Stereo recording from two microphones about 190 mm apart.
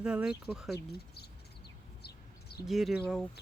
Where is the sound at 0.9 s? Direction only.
60° left (ahead or behind).